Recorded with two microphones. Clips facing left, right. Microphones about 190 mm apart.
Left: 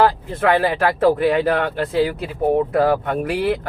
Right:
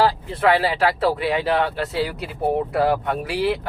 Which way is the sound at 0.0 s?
50° left (ahead or behind).